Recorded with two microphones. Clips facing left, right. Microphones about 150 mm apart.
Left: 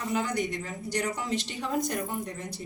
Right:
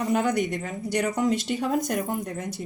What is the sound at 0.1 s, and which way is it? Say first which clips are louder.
A woman's voice: right 4 dB; 60° right (ahead or behind).